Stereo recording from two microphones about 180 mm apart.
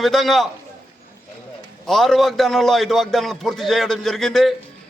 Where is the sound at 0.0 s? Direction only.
Centre (ahead or behind).